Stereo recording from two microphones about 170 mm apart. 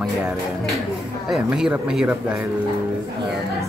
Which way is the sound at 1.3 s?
5° right (ahead or behind).